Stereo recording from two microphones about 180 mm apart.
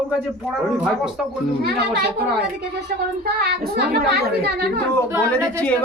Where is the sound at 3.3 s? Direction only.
65° right (ahead or behind).